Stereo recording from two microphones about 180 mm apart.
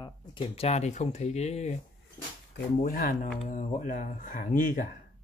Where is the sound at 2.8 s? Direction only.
50° left (ahead or behind).